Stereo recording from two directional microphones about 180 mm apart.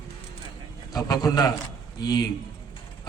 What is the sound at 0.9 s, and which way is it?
A man's voice, 20° left (ahead or behind).